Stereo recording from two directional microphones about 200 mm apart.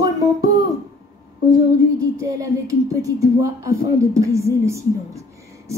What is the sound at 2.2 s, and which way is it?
A woman's voice, 15° right (ahead or behind).